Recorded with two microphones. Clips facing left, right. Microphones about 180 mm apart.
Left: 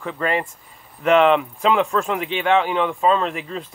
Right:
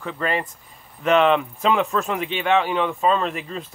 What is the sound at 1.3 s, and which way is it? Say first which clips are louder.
A man's voice: left 2 dB; 20° left (ahead or behind).